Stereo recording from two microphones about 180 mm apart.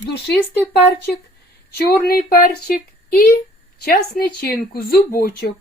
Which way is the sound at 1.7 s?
60° left (ahead or behind).